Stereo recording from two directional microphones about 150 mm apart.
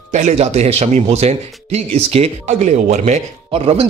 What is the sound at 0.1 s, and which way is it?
A man's voice, 50° right (ahead or behind).